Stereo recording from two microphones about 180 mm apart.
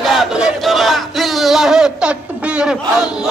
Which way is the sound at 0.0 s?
Centre (ahead or behind).